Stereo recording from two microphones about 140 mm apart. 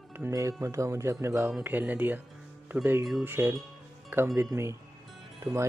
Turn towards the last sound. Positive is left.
turn(degrees=-20)  # may be behind; listen again after turning